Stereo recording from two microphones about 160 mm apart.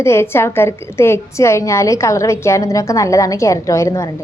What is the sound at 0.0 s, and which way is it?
A woman's voice, 15° left (ahead or behind).